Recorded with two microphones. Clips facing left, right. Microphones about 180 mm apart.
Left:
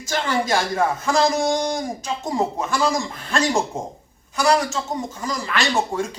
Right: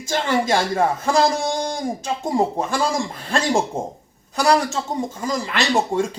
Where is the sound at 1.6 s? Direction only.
30° right (ahead or behind).